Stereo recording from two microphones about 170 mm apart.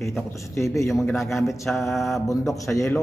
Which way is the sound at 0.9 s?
Centre (ahead or behind).